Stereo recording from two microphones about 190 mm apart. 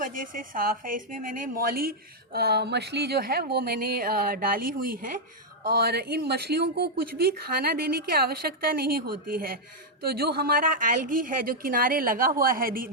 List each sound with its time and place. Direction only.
0.0 s a woman's voice: 45° right (ahead or behind)